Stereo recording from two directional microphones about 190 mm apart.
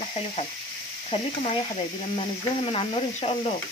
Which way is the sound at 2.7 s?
30° left (ahead or behind).